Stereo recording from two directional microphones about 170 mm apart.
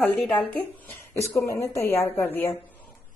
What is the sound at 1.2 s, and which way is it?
Speech, 15° left (ahead or behind).